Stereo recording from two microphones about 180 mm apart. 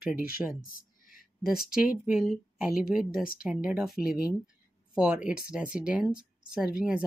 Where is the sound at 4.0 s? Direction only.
55° left (ahead or behind).